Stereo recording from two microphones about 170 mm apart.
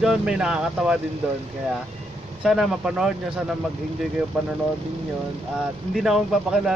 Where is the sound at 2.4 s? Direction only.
5° right (ahead or behind).